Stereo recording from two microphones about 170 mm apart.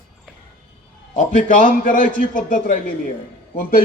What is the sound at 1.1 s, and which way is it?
A man's voice, 50° left (ahead or behind).